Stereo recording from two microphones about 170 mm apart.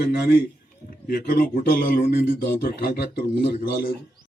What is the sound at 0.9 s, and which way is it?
Speech, 60° left (ahead or behind).